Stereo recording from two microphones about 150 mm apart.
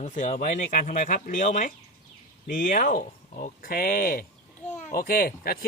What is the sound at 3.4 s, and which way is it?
Speech, 70° left (ahead or behind).